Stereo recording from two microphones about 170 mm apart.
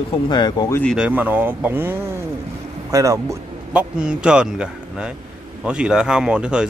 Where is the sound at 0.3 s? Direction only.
25° left (ahead or behind).